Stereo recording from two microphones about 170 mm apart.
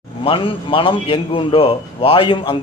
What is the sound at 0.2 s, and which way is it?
A man's voice, 30° left (ahead or behind).